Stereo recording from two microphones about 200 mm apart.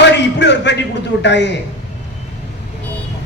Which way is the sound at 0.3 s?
60° left (ahead or behind).